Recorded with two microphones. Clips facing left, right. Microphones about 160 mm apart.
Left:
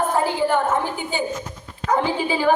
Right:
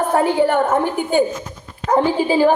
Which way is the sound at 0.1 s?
65° right (ahead or behind).